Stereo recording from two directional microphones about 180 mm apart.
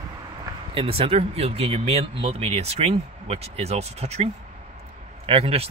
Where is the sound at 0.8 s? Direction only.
30° right (ahead or behind).